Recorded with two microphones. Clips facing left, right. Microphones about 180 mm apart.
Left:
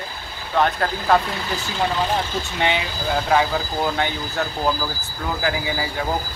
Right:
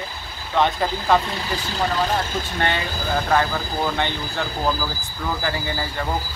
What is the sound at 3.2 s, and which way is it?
Speech, 10° left (ahead or behind).